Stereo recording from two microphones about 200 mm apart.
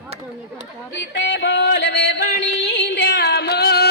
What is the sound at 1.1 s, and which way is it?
Yodeling, 60° left (ahead or behind).